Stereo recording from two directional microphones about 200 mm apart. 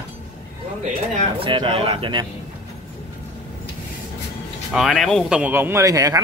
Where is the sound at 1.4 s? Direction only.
25° right (ahead or behind).